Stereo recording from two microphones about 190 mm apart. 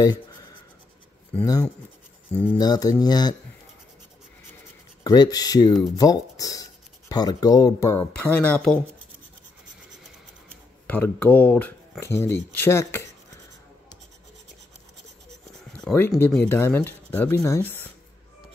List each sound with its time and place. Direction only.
1.3 s speech: 15° left (ahead or behind)
5.0 s speech: 20° left (ahead or behind); by 8.7 s 5° left (ahead or behind)
10.9 s speech: 10° left (ahead or behind)
15.7 s writing: 10° left (ahead or behind)
16.2 s speech: 10° left (ahead or behind)